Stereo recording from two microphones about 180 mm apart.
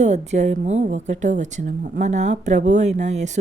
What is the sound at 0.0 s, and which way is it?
A woman's voice, 40° right (ahead or behind).